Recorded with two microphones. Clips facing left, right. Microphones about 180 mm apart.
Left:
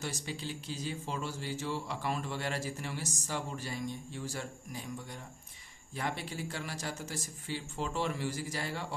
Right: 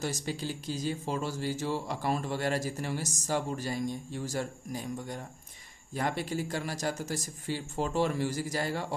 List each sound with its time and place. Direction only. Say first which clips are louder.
0.0 s speech: right 5 dB; 40° right (ahead or behind)